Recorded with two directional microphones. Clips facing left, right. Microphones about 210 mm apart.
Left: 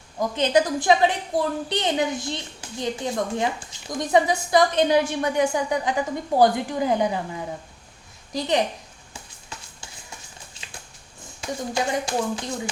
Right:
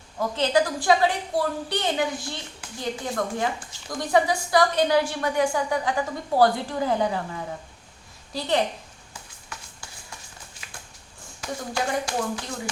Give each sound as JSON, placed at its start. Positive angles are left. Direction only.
{"t": 0.2, "sound": "a woman's voice", "side_deg": 15}
{"t": 9.8, "sound": "music", "side_deg": 25}
{"t": 11.7, "sound": "a woman's voice", "side_deg": 20}